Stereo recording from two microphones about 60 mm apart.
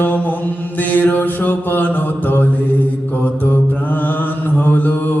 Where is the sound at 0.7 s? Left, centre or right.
Left.